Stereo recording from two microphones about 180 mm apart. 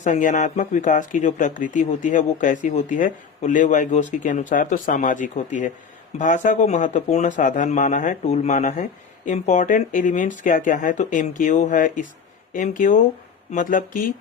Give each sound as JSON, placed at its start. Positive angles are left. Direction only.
{"t": 0.0, "sound": "speech", "side_deg": 45}